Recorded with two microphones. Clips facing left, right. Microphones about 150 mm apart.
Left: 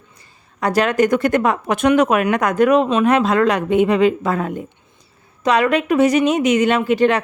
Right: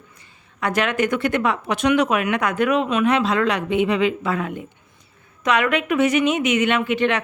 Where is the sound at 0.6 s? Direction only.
35° left (ahead or behind).